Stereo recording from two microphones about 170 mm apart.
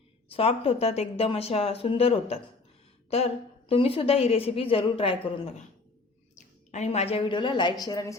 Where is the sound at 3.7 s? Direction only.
35° left (ahead or behind).